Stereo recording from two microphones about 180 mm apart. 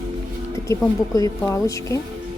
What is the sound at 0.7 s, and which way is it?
Speech, 15° left (ahead or behind).